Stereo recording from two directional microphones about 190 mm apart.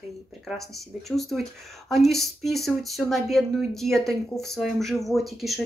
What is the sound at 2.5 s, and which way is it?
Speech, centre (ahead or behind).